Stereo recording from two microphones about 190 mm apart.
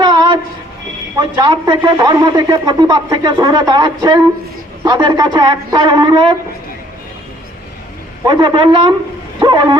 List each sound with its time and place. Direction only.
0.0 s a sound: 25° right (ahead or behind)
1.2 s a man's voice: 20° right (ahead or behind)
8.2 s a man's voice: 25° right (ahead or behind)